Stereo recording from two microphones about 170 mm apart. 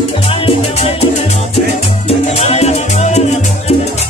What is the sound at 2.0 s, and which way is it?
Salsa music, 40° left (ahead or behind).